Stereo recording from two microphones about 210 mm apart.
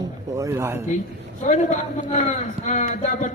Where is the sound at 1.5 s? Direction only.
35° left (ahead or behind).